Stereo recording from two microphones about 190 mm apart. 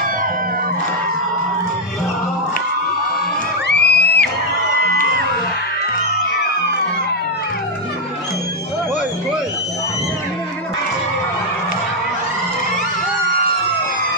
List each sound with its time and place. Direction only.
3.6 s music: 60° left (ahead or behind)